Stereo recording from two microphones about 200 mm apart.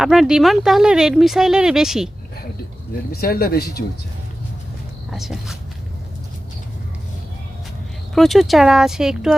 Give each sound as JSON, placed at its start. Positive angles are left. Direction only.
{"t": 0.0, "sound": "speech", "side_deg": 0}
{"t": 3.1, "sound": "speech", "side_deg": 50}
{"t": 5.1, "sound": "speech", "side_deg": 0}
{"t": 8.1, "sound": "speech", "side_deg": 0}